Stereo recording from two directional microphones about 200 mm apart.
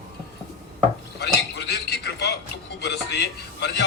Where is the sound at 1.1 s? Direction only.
55° left (ahead or behind).